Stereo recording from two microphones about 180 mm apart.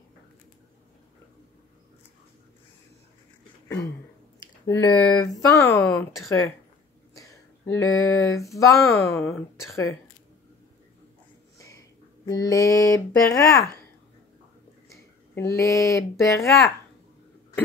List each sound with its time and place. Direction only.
3.6 s throat clearing: 20° left (ahead or behind)
4.6 s speech: 20° left (ahead or behind)
7.2 s a sound: 15° left (ahead or behind)
11.5 s a sound: 20° left (ahead or behind)
12.3 s speech: 20° left (ahead or behind)
14.9 s speech: 15° left (ahead or behind)